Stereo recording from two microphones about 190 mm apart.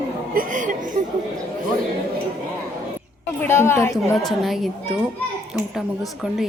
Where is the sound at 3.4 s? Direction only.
15° left (ahead or behind).